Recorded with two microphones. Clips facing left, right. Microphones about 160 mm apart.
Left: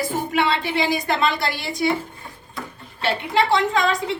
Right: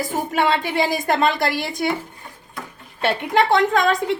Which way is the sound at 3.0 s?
50° right (ahead or behind).